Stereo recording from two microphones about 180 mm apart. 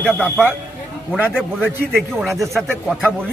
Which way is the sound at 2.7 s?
5° right (ahead or behind).